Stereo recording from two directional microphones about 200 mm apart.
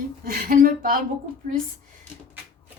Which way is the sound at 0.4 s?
45° right (ahead or behind).